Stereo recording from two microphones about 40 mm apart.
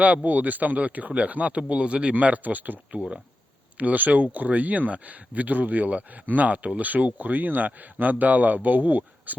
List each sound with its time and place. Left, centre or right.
0.0 s speech: right
2.1 s speech: right